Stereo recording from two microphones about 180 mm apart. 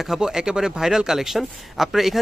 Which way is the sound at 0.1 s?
5° right (ahead or behind).